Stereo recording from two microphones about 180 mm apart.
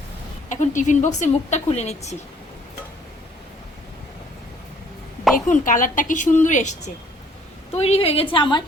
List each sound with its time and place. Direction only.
0.5 s a woman's voice: 45° left (ahead or behind)
5.5 s a woman's voice: 45° left (ahead or behind); by 8.6 s 25° left (ahead or behind)